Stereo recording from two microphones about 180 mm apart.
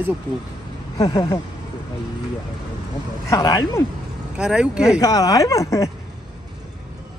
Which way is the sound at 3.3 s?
20° left (ahead or behind).